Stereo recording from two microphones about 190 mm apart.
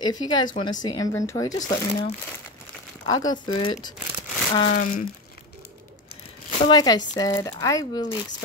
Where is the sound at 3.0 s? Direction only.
20° left (ahead or behind).